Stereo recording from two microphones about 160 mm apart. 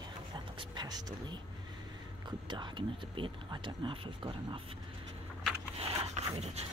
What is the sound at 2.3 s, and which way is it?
Speech, 30° right (ahead or behind).